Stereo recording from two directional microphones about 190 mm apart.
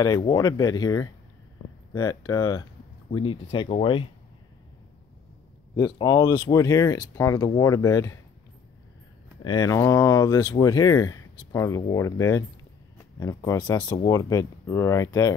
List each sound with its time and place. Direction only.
0.0 s speech: 20° left (ahead or behind)
5.8 s speech: 20° left (ahead or behind)
9.4 s speech: 20° left (ahead or behind)